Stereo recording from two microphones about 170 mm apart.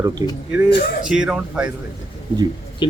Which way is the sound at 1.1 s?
5° right (ahead or behind).